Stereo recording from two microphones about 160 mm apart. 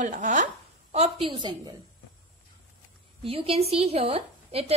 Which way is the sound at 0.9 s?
35° right (ahead or behind).